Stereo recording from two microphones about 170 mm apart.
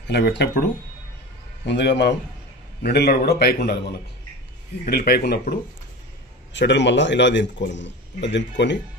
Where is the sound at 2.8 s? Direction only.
70° left (ahead or behind).